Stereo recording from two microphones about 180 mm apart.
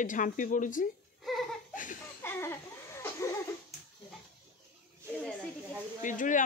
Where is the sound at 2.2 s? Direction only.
15° left (ahead or behind).